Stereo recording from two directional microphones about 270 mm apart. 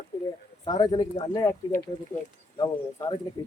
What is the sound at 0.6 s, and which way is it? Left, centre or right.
Speech, centre.